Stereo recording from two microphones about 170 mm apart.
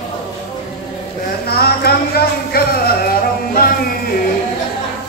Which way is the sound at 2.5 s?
65° left (ahead or behind).